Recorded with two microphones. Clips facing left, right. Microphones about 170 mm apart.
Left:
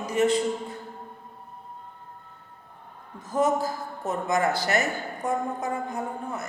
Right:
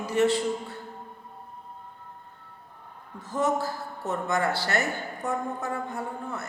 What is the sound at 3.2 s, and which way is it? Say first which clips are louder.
A woman's voice: left 3 dB; 20° left (ahead or behind).